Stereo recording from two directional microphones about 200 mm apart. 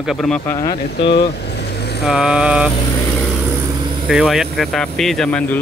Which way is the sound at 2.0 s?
5° right (ahead or behind).